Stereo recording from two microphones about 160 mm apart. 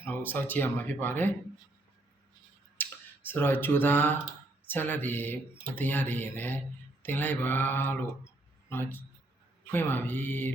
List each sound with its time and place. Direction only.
0.0 s speech: 10° left (ahead or behind)
2.8 s a sound: 10° left (ahead or behind)
3.2 s speech: 10° left (ahead or behind)